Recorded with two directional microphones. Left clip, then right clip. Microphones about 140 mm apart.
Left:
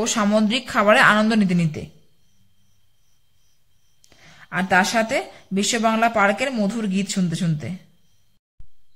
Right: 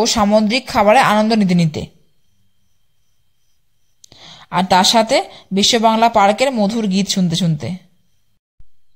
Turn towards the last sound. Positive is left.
turn(degrees=-35)  # may be behind; listen again after turning